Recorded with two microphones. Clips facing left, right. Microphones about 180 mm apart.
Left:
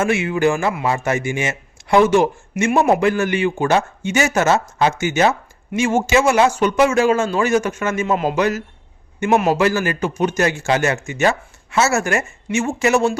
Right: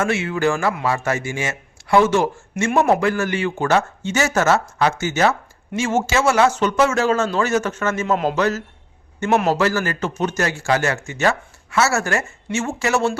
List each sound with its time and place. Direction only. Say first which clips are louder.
0.0 s a man's voice: left 3 dB; 15° left (ahead or behind)